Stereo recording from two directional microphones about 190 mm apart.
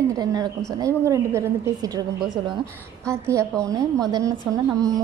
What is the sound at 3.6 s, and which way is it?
Speech, 15° right (ahead or behind).